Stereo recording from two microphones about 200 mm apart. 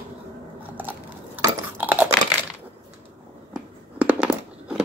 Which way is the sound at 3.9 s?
5° right (ahead or behind).